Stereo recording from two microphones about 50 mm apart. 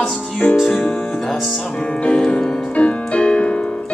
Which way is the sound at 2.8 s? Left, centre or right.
Left.